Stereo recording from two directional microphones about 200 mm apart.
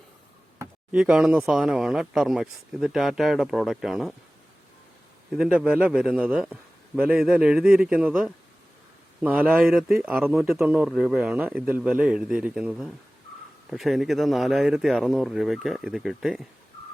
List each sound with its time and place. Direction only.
0.6 s speech: 5° right (ahead or behind)
5.3 s speech: 5° right (ahead or behind)